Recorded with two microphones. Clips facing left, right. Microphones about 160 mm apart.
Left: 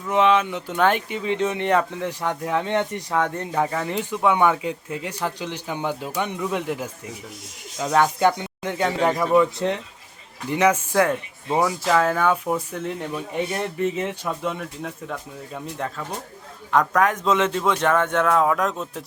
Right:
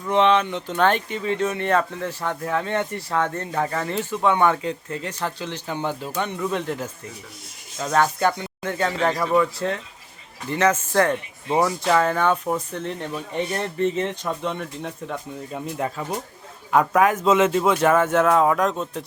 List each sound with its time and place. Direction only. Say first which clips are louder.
0.1 s speech: even; 5° left (ahead or behind)